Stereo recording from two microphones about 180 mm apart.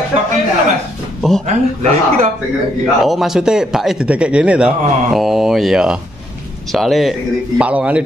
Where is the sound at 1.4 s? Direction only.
40° right (ahead or behind).